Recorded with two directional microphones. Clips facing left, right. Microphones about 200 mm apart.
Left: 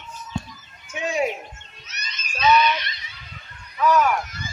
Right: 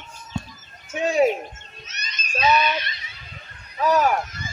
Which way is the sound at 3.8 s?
35° right (ahead or behind).